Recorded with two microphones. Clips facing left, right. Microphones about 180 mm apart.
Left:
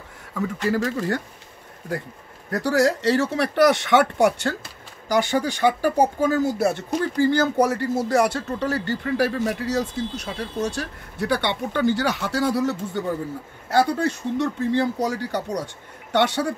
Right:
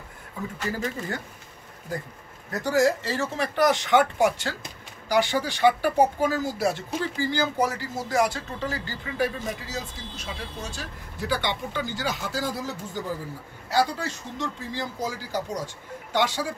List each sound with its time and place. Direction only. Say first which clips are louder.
0.3 s speech: left 8 dB; 80° left
2.5 s speech: left 2 dB; 75° left (ahead or behind)
5.0 s speech: left 2 dB; 45° left (ahead or behind); by 12.7 s 70° left (ahead or behind)
13.7 s speech: left 5 dB; 55° left (ahead or behind)